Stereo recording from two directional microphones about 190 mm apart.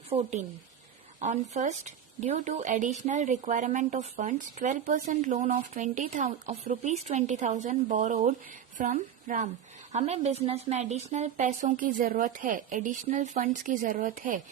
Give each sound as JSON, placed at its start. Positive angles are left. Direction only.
{"t": 0.1, "sound": "a woman's voice", "side_deg": -35}
{"t": 9.9, "sound": "a woman's voice", "side_deg": -35}